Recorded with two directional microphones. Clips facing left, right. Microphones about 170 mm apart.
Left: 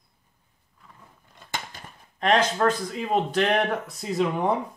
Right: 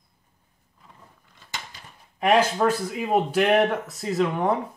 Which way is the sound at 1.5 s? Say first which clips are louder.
Left 4 dB; 50° left (ahead or behind).